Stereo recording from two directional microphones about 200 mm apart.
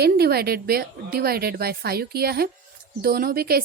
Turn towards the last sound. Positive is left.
turn(degrees=-50)  # may be behind; listen again after turning